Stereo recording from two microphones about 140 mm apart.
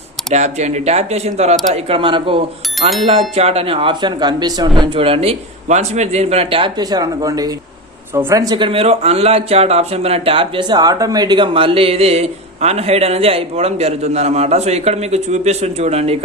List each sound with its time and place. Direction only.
0.3 s speech: 55° right (ahead or behind); by 4.7 s 30° right (ahead or behind)
4.8 s speech: 40° right (ahead or behind)